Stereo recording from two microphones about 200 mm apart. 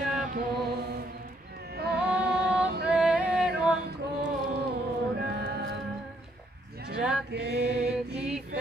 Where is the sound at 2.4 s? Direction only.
60° right (ahead or behind).